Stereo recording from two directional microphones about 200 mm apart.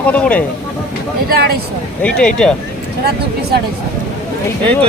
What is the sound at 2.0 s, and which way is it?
Speech, 5° left (ahead or behind).